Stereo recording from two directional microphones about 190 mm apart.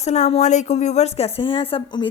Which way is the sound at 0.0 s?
35° left (ahead or behind).